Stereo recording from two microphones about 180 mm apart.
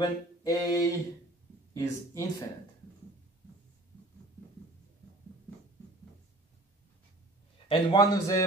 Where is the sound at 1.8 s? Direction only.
15° left (ahead or behind).